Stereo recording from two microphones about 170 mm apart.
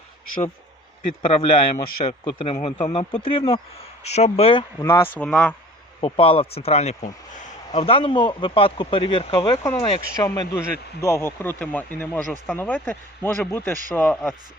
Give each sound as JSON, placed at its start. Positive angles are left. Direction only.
{"t": 1.2, "sound": "speech", "side_deg": 30}
{"t": 4.8, "sound": "speech", "side_deg": 15}
{"t": 6.0, "sound": "speech", "side_deg": 35}
{"t": 9.6, "sound": "speech", "side_deg": 15}